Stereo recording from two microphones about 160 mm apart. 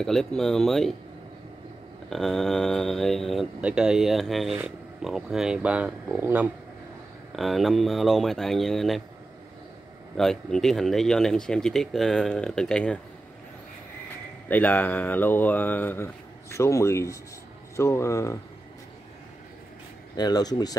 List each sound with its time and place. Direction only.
0.0 s speech: centre (ahead or behind)
2.0 s speech: centre (ahead or behind)
10.1 s speech: 5° left (ahead or behind)
14.5 s speech: 10° left (ahead or behind)
20.2 s speech: 25° left (ahead or behind)